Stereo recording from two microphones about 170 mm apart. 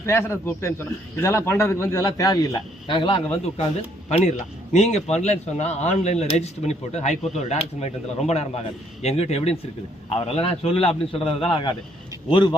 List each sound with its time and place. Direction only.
0.0 s a man's voice: 15° left (ahead or behind)
4.1 s speech: 40° left (ahead or behind)
9.0 s speech: 40° left (ahead or behind)